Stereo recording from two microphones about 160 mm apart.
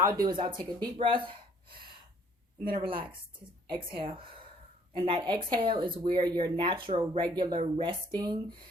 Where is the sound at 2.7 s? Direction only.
30° right (ahead or behind).